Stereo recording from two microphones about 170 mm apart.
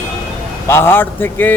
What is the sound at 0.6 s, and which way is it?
Speech, 15° left (ahead or behind).